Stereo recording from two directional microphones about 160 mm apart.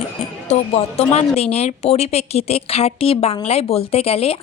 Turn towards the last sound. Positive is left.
turn(degrees=40)  # may be behind; listen again after turning